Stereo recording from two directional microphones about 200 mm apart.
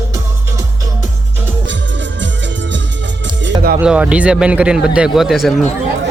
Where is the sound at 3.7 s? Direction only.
5° right (ahead or behind).